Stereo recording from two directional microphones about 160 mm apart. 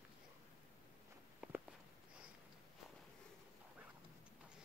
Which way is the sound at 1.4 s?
5° right (ahead or behind).